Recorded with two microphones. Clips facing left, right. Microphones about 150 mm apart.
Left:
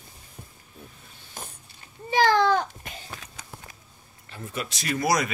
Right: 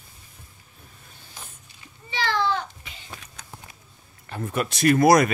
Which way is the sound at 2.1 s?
45° left (ahead or behind).